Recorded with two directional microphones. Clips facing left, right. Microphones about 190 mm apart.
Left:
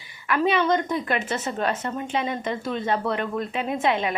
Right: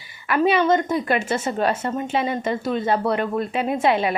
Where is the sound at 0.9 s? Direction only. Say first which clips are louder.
Right 4 dB; 35° right (ahead or behind).